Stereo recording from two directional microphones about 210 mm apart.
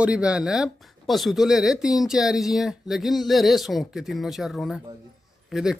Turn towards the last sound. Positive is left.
turn(degrees=0)  # may be behind; listen again after turning